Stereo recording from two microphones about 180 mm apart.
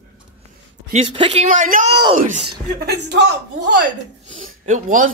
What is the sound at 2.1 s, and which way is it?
Speech, 45° right (ahead or behind).